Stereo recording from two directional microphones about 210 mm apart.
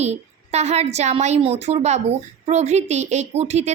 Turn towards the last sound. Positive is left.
turn(degrees=-30)  # may be behind; listen again after turning